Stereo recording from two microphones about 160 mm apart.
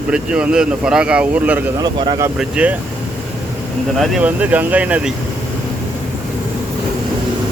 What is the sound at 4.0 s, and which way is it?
Speech, 5° right (ahead or behind).